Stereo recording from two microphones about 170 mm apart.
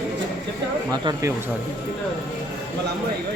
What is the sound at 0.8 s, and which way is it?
Speech, 20° right (ahead or behind).